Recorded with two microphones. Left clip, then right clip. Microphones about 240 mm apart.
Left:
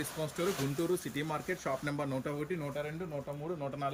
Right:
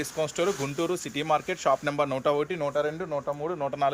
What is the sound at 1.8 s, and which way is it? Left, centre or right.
Speech, right.